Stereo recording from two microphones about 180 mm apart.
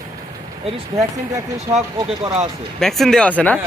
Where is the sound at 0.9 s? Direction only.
35° right (ahead or behind).